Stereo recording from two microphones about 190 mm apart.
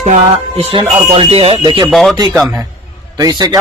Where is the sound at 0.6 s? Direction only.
30° right (ahead or behind).